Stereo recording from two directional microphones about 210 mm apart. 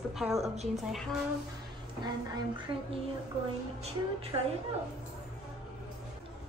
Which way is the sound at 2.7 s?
25° right (ahead or behind).